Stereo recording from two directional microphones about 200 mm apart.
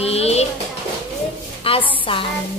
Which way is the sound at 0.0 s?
30° left (ahead or behind).